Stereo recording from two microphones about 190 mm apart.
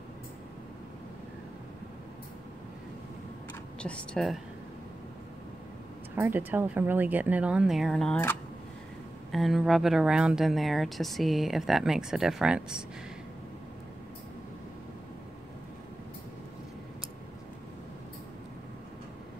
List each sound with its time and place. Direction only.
3.8 s speech: 5° left (ahead or behind)
6.1 s speech: 10° right (ahead or behind)